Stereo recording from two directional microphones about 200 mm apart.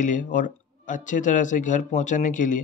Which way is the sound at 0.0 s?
40° left (ahead or behind).